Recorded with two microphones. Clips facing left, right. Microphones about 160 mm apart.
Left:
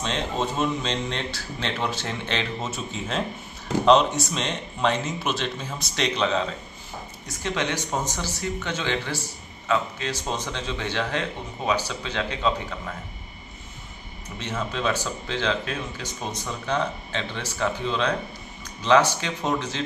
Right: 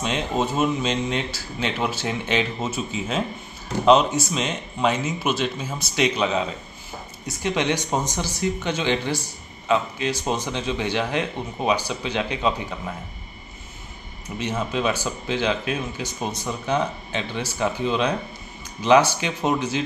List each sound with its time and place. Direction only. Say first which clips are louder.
0.0 s speech: right 3 dB; 10° right (ahead or behind)
14.4 s speech: right 3 dB; 15° right (ahead or behind)